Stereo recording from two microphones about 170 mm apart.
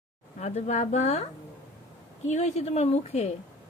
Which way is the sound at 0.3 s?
45° left (ahead or behind).